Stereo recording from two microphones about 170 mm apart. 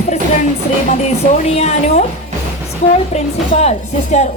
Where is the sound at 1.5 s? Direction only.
40° left (ahead or behind).